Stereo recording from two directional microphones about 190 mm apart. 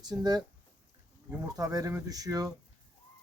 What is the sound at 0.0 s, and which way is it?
Speech, 20° right (ahead or behind).